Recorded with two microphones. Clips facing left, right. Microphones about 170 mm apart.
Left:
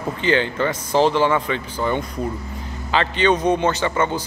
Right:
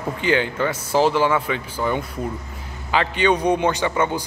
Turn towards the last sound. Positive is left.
turn(degrees=-10)  # may be behind; listen again after turning